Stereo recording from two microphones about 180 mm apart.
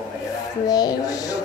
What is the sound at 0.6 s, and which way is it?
Speech, 20° left (ahead or behind).